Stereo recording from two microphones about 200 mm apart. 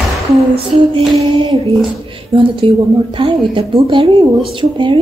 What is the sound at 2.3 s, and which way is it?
Speech, 25° right (ahead or behind).